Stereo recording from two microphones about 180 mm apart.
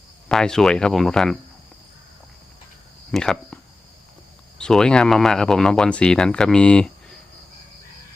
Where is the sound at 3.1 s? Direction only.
Centre (ahead or behind).